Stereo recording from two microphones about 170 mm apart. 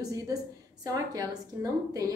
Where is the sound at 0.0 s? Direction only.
20° right (ahead or behind).